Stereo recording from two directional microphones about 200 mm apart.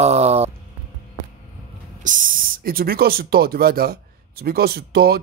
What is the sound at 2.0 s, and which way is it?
Speech, 40° right (ahead or behind).